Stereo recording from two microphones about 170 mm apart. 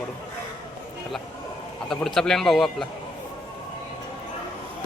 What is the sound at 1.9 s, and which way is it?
Speech, centre (ahead or behind).